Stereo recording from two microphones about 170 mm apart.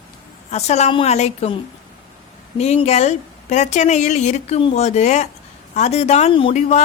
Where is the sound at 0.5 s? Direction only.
40° left (ahead or behind).